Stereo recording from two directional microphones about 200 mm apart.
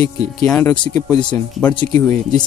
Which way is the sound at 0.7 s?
20° left (ahead or behind).